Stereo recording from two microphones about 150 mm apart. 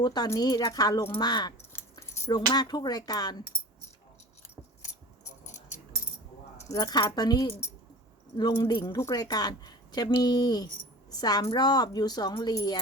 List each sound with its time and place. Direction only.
0.0 s speech: 25° left (ahead or behind)
1.7 s keys jangling: 20° left (ahead or behind)
2.5 s speech: 25° left (ahead or behind)
6.6 s speech: 25° left (ahead or behind)